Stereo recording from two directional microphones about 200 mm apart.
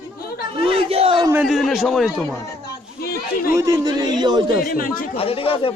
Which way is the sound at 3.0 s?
50° left (ahead or behind).